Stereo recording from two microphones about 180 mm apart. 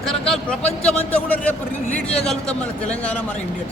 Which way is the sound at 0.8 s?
5° left (ahead or behind).